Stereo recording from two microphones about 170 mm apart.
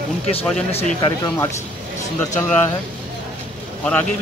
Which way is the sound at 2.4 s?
10° left (ahead or behind).